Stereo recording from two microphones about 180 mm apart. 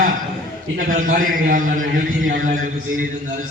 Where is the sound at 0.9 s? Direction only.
50° right (ahead or behind).